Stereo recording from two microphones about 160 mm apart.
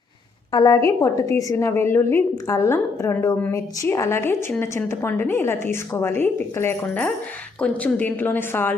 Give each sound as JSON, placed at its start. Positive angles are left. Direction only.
{"t": 0.5, "sound": "a woman's voice", "side_deg": 20}